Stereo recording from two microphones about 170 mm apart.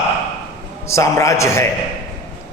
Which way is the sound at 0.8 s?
15° left (ahead or behind).